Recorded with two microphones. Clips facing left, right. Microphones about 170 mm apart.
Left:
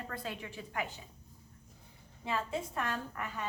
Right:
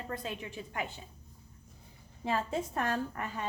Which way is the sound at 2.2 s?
40° right (ahead or behind).